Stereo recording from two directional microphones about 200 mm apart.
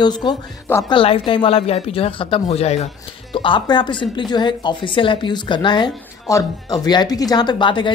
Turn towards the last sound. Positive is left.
turn(degrees=25)  # may be behind; listen again after turning